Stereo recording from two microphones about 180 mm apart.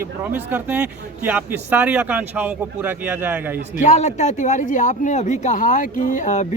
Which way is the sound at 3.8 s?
40° left (ahead or behind).